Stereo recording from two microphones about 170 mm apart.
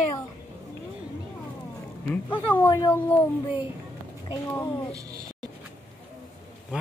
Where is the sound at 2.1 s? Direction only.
10° left (ahead or behind).